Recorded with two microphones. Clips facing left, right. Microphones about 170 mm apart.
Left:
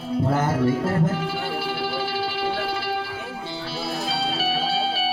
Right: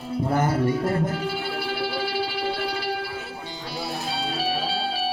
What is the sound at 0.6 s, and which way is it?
Speech, 15° right (ahead or behind).